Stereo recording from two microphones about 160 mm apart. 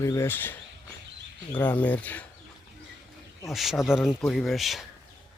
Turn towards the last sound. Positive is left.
turn(degrees=0)  # may be behind; listen again after turning